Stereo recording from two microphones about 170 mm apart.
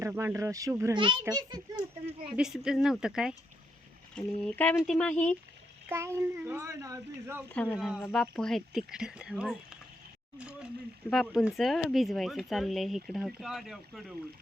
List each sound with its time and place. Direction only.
0.0 s a child's voice: 15° right (ahead or behind)
2.3 s speech: 5° right (ahead or behind)
5.9 s speech: 15° right (ahead or behind)
7.5 s speech: 10° left (ahead or behind)
10.3 s speech: 5° right (ahead or behind)